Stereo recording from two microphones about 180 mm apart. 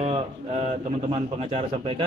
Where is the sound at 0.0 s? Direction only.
35° right (ahead or behind).